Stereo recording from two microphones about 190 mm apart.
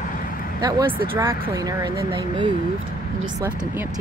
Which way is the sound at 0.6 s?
20° right (ahead or behind).